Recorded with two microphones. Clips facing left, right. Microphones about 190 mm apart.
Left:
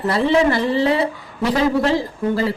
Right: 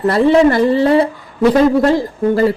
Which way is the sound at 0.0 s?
50° right (ahead or behind).